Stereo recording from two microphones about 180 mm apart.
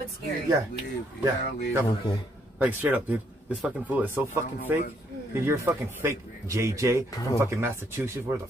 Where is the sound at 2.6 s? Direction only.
10° right (ahead or behind).